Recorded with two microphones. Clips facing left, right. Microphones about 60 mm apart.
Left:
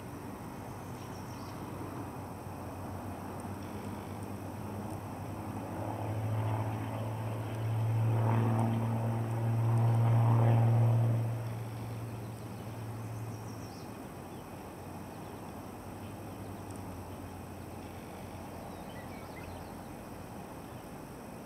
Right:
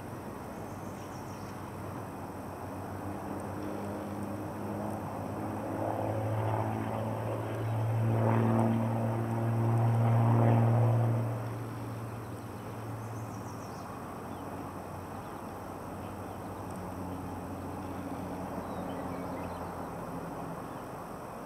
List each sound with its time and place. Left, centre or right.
5.8 s vehicle: right